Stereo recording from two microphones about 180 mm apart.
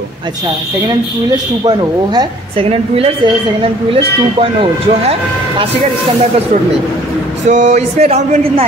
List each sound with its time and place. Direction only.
1.6 s a woman's voice: 25° right (ahead or behind)
7.4 s a woman's voice: 40° right (ahead or behind)